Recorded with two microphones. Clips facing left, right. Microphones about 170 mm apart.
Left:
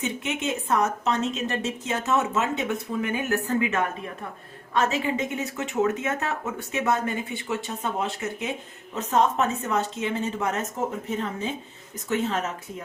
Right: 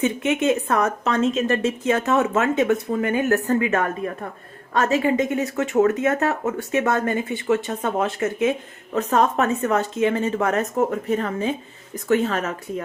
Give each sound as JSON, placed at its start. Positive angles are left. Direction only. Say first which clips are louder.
{"t": 0.0, "sound": "a woman's voice", "louder": "right 8 dB", "side_deg": -55}